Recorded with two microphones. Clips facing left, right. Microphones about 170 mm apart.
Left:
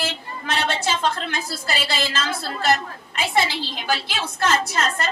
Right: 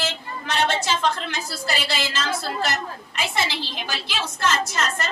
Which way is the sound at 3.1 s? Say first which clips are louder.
Left 4 dB; 55° left (ahead or behind).